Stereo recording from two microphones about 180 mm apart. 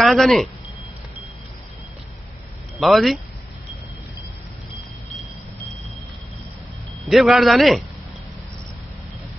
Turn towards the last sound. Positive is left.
turn(degrees=0)  # may be behind; listen again after turning